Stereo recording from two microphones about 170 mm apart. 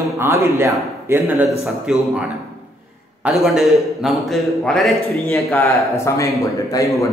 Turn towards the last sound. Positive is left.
turn(degrees=20)  # may be behind; listen again after turning